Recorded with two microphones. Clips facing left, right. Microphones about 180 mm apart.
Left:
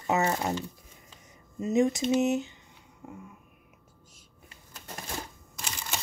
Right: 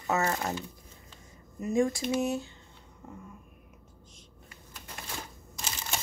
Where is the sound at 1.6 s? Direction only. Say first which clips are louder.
Left 2 dB; 20° left (ahead or behind).